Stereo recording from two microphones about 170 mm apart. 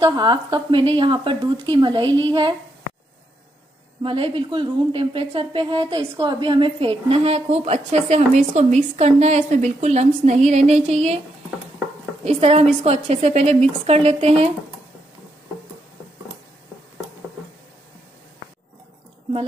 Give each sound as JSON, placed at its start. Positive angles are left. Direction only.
{"t": 0.0, "sound": "a woman's voice", "side_deg": -25}
{"t": 4.0, "sound": "a woman's voice", "side_deg": -30}
{"t": 12.3, "sound": "a woman's voice", "side_deg": -35}